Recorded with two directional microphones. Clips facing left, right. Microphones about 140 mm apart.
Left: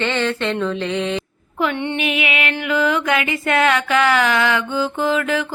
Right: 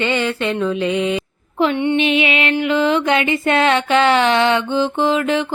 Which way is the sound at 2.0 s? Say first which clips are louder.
Right 4 dB; 25° right (ahead or behind).